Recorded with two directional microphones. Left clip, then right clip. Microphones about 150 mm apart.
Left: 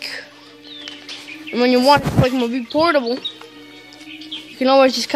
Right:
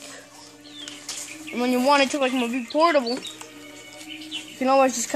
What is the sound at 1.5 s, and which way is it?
Speech, 55° left (ahead or behind).